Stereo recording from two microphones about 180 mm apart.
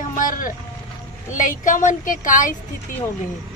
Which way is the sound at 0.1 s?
50° left (ahead or behind).